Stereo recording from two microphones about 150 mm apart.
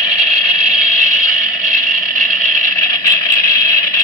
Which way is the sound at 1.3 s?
25° left (ahead or behind).